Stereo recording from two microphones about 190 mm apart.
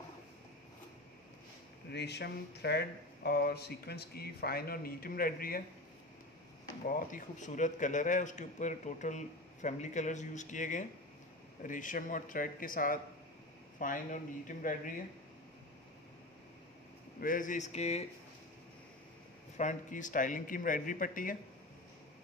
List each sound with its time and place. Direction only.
1.9 s speech: 60° left (ahead or behind)
6.9 s a man's voice: 45° left (ahead or behind)
17.2 s a man's voice: 45° left (ahead or behind)
19.5 s a man's voice: 40° left (ahead or behind)